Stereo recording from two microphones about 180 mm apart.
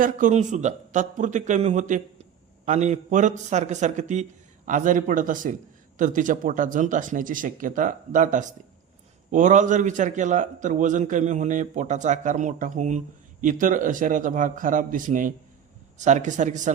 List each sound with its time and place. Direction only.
0.0 s a man's voice: 45° right (ahead or behind)